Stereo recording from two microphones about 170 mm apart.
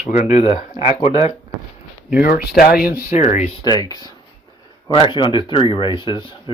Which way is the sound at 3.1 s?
45° left (ahead or behind).